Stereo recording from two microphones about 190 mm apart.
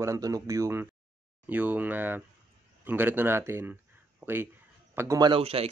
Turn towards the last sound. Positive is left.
turn(degrees=-30)  # may be behind; listen again after turning